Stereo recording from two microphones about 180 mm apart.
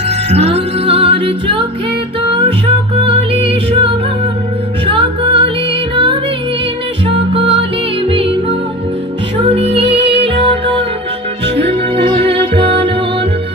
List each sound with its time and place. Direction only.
0.3 s music: 35° right (ahead or behind)
3.0 s music: 30° right (ahead or behind)
12.0 s music: 30° right (ahead or behind)